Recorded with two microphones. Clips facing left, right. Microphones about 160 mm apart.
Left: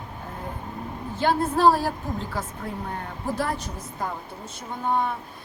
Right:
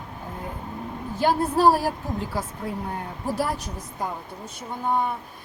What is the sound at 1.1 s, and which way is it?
A woman's voice, 10° right (ahead or behind).